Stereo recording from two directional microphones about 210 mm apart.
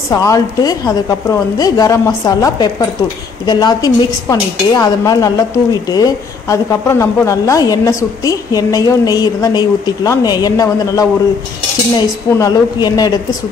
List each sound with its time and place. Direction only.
0.1 s a woman's voice: 15° left (ahead or behind)
12.4 s a woman's voice: 20° left (ahead or behind)